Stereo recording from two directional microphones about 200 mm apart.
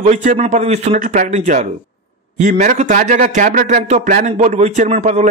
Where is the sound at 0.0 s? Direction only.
35° right (ahead or behind).